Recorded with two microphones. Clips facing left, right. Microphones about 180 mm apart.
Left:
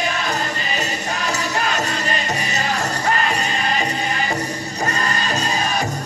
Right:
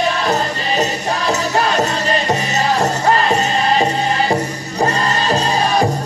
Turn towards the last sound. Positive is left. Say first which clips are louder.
# right 6 dB
turn(degrees=-35)  # may be behind; listen again after turning